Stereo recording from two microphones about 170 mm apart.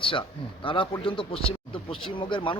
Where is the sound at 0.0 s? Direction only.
30° left (ahead or behind).